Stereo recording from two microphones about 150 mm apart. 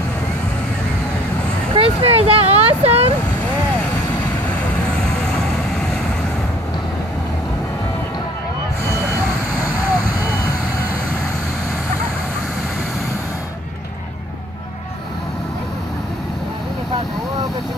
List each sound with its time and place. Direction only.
1.7 s vehicle: 40° right (ahead or behind)